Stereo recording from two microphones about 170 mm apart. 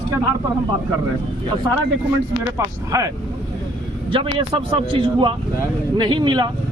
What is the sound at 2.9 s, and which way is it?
Speech, 20° right (ahead or behind).